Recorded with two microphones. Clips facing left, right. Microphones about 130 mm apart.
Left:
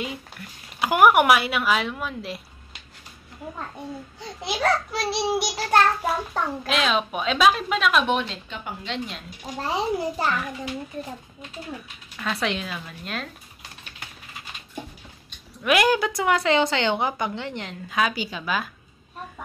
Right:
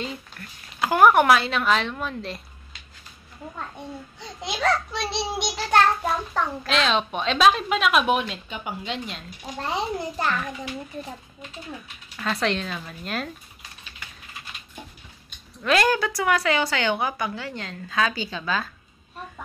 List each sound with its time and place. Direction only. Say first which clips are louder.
0.0 s speech: left 1 dB; 10° left (ahead or behind)
4.4 s speech: left 1 dB; 5° left (ahead or behind)
12.2 s speech: right 2 dB; centre (ahead or behind)
15.6 s a woman's voice: left 1 dB; 15° left (ahead or behind)